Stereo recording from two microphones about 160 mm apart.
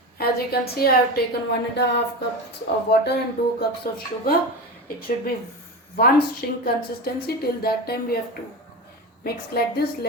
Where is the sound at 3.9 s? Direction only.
65° left (ahead or behind).